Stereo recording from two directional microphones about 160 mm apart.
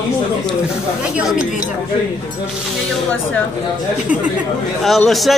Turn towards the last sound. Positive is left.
turn(degrees=0)  # may be behind; listen again after turning